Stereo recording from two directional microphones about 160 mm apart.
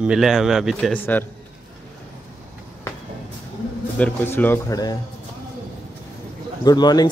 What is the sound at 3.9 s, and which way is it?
Speech, 10° left (ahead or behind).